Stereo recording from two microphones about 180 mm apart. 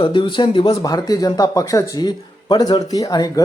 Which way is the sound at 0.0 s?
25° left (ahead or behind).